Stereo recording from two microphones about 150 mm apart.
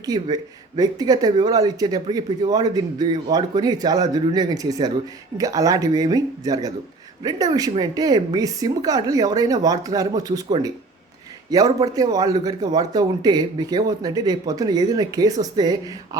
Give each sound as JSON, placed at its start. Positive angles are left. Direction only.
{"t": 0.0, "sound": "a man's voice", "side_deg": -25}